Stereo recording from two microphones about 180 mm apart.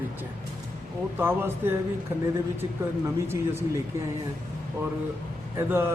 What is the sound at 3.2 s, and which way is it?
Speech, 15° right (ahead or behind).